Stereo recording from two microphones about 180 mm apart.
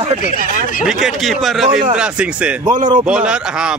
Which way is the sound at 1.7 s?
50° right (ahead or behind).